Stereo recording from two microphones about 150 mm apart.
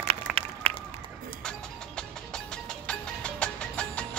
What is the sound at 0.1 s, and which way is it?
Applause, 45° right (ahead or behind).